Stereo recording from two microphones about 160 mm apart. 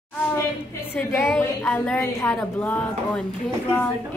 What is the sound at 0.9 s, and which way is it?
A woman's voice, 15° left (ahead or behind).